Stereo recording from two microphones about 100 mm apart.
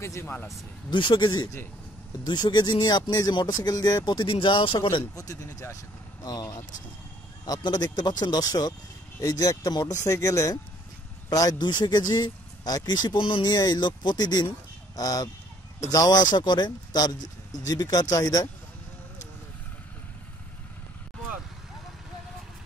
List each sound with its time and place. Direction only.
0.0 s a man's voice: 25° left (ahead or behind)
0.8 s speech: 50° left (ahead or behind)
5.2 s speech: 35° left (ahead or behind); by 13.5 s 55° left (ahead or behind)
13.5 s speech: 45° left (ahead or behind)